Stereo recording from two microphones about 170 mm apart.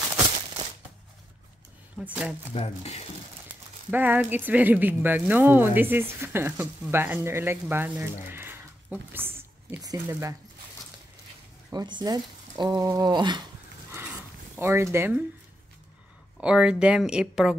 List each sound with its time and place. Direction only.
2.0 s speech: 5° right (ahead or behind)
2.5 s speech: 40° left (ahead or behind)
3.9 s speech: 10° right (ahead or behind)
7.7 s a sound: 10° right (ahead or behind)
9.8 s speech: 20° right (ahead or behind)
11.7 s speech: 25° right (ahead or behind)
14.6 s speech: 15° right (ahead or behind)
16.3 s speech: 5° right (ahead or behind)